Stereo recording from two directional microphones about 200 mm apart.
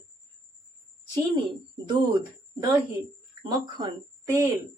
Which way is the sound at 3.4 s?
20° right (ahead or behind).